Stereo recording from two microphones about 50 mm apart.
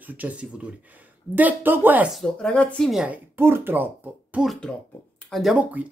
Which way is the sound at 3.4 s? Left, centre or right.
Right.